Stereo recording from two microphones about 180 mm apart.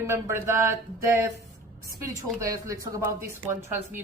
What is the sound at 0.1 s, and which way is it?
Speech, 15° right (ahead or behind).